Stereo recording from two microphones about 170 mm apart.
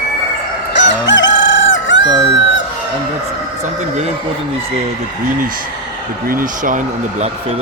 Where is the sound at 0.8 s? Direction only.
90° left.